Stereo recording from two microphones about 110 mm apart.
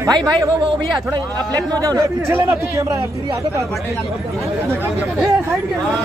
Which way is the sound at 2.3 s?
20° right (ahead or behind).